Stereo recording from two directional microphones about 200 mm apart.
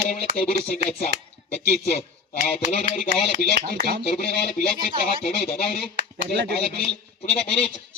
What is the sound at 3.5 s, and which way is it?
Speech, 50° right (ahead or behind).